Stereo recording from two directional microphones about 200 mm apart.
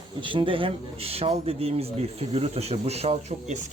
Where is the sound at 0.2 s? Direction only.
25° right (ahead or behind).